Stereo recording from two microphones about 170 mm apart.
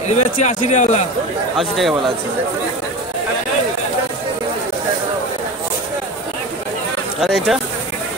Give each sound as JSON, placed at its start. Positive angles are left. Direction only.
{"t": 0.1, "sound": "a man's voice", "side_deg": 45}
{"t": 1.6, "sound": "speech", "side_deg": 0}
{"t": 7.2, "sound": "speech", "side_deg": 0}